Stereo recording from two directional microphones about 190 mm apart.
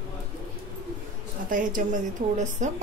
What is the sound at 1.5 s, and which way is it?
Speech, 45° right (ahead or behind).